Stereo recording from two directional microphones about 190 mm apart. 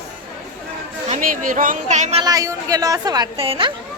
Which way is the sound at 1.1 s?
45° right (ahead or behind).